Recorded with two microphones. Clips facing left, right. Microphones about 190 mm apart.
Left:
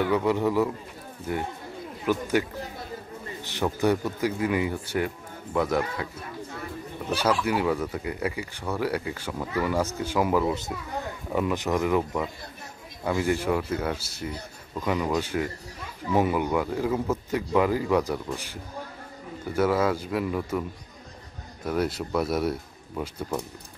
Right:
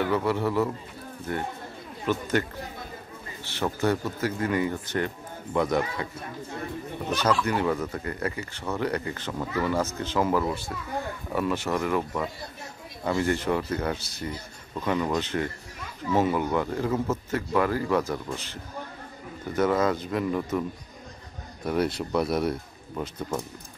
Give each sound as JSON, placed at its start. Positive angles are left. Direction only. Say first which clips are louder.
{"t": 0.0, "sound": "speech", "louder": "left 2 dB", "side_deg": 15}
{"t": 3.4, "sound": "speech", "louder": "left 2 dB", "side_deg": 15}
{"t": 7.1, "sound": "speech", "louder": "even", "side_deg": 10}
{"t": 21.6, "sound": "speech", "louder": "right 1 dB", "side_deg": 0}